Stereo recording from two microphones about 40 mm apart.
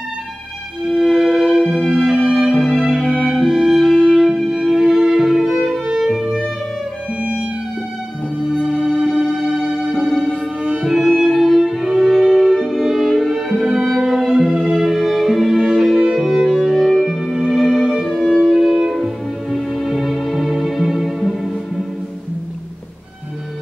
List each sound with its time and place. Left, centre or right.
0.8 s music: centre
1.2 s music: centre
2.5 s music: centre
4.1 s music: centre
4.4 s music: centre
8.7 s music: centre
9.1 s music: centre
9.9 s music: centre
10.3 s music: right
10.8 s music: centre